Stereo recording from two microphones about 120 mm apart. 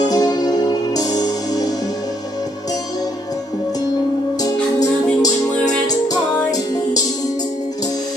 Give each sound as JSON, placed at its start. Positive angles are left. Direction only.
{"t": 0.0, "sound": "music", "side_deg": 35}
{"t": 4.4, "sound": "music", "side_deg": 30}
{"t": 6.5, "sound": "music", "side_deg": 30}